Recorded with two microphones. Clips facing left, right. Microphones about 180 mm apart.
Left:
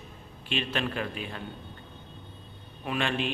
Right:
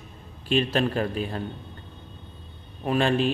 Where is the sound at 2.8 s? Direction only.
40° right (ahead or behind).